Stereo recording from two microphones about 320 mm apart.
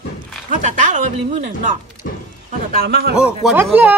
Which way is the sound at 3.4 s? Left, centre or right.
Centre.